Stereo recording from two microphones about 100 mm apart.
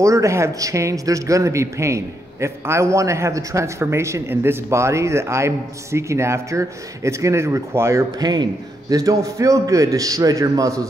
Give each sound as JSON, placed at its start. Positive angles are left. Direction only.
{"t": 0.0, "sound": "a man's voice", "side_deg": -30}